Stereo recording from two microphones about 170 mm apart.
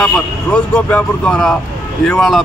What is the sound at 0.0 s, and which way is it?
A man's voice, 5° left (ahead or behind).